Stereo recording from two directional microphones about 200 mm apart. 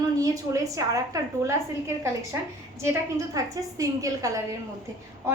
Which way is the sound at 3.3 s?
15° right (ahead or behind).